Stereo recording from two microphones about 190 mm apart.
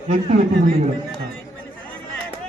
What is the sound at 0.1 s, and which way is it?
Speech, 35° right (ahead or behind).